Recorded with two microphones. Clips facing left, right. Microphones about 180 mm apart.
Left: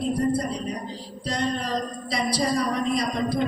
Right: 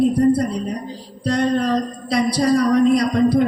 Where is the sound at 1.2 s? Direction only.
60° right (ahead or behind).